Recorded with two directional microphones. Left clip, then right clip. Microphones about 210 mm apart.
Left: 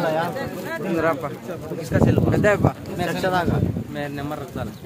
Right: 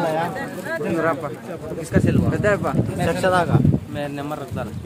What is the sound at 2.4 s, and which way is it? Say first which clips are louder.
Speech: right 1 dB; 10° left (ahead or behind).